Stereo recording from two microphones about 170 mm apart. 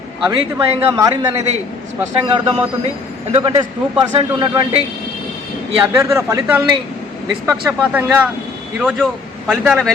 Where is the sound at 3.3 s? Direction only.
30° right (ahead or behind).